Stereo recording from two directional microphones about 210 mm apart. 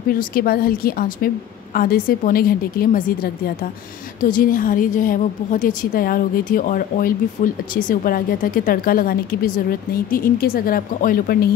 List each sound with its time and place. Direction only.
0.1 s a woman's voice: 45° left (ahead or behind)
4.2 s a woman's voice: 40° left (ahead or behind)